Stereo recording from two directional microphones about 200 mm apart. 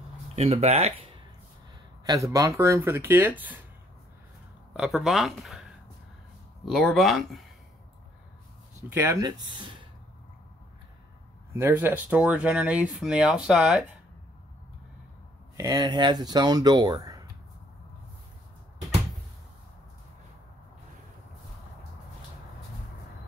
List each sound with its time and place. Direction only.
0.4 s speech: 30° right (ahead or behind)
2.0 s speech: 15° right (ahead or behind)
4.7 s speech: centre (ahead or behind)
6.7 s speech: centre (ahead or behind)
9.0 s speech: 15° right (ahead or behind)
11.5 s speech: 10° right (ahead or behind)
15.5 s speech: 15° right (ahead or behind)